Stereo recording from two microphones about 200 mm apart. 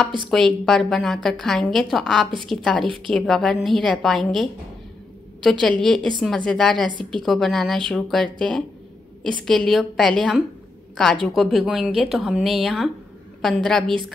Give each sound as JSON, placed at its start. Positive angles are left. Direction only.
{"t": 0.3, "sound": "speech", "side_deg": 5}
{"t": 9.7, "sound": "speech", "side_deg": 0}